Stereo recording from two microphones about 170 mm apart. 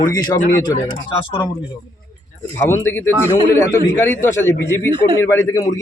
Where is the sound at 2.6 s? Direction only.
15° left (ahead or behind).